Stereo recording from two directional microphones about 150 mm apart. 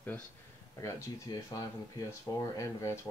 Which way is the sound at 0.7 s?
20° left (ahead or behind).